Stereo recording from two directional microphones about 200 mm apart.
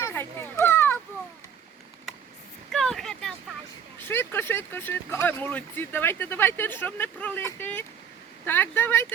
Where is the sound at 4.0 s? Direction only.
10° left (ahead or behind).